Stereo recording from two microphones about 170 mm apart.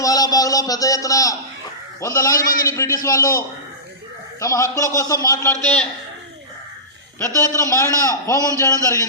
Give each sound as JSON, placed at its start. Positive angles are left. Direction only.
{"t": 0.0, "sound": "a man's voice", "side_deg": 20}
{"t": 5.6, "sound": "a man's voice", "side_deg": 5}
{"t": 7.2, "sound": "a man's voice", "side_deg": 15}